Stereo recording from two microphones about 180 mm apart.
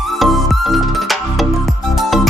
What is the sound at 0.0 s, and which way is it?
Music, centre (ahead or behind).